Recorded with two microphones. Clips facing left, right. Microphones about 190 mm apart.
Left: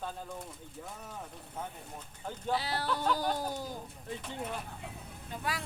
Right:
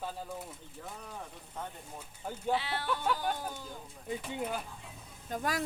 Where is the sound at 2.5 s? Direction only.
40° left (ahead or behind).